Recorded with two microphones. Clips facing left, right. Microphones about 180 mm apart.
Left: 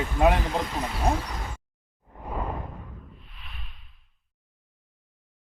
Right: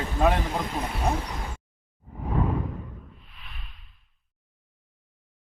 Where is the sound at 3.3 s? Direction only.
Centre (ahead or behind).